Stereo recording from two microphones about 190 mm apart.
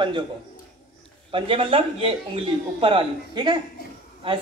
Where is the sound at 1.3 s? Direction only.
30° right (ahead or behind).